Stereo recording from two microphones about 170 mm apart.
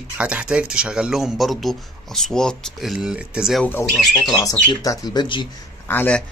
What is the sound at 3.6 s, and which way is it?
Speech, 10° left (ahead or behind).